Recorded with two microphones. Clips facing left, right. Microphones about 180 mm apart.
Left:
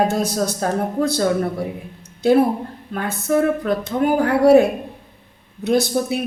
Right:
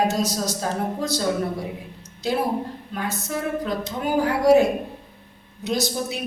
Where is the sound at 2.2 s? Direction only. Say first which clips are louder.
Left 8 dB; 55° left (ahead or behind).